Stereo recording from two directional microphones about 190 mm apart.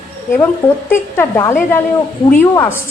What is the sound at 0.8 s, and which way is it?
A woman's voice, 10° left (ahead or behind).